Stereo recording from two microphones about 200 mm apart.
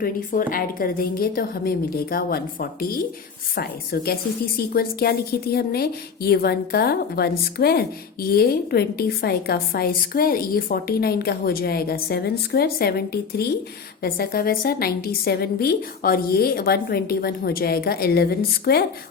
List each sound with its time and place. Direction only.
0.0 s a woman's voice: 45° left (ahead or behind)